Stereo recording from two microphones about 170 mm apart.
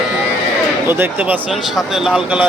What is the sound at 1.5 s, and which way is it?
Speech, centre (ahead or behind).